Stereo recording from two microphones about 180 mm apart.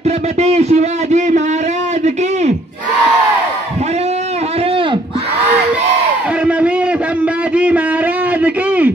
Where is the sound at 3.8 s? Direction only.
35° right (ahead or behind).